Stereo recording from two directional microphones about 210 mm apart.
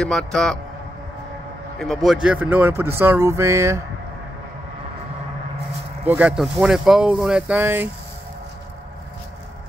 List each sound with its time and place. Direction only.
0.0 s speech: 5° left (ahead or behind)
1.8 s speech: centre (ahead or behind)
6.0 s speech: 5° right (ahead or behind)